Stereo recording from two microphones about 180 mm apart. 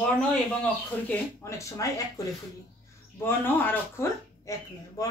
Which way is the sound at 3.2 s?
10° left (ahead or behind).